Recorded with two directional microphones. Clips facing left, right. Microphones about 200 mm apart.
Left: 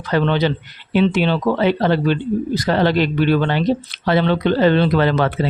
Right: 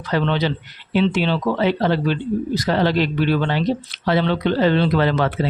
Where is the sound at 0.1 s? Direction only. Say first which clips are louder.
Left 3 dB; 55° left (ahead or behind).